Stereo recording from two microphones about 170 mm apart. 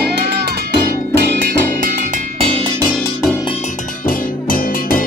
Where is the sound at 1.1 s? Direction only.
55° right (ahead or behind).